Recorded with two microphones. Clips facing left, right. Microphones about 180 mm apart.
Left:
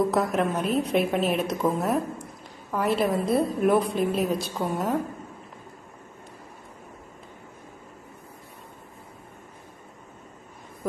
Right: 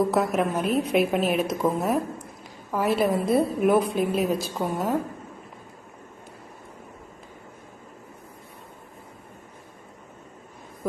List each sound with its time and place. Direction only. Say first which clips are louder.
0.0 s a woman's voice: right 1 dB; centre (ahead or behind)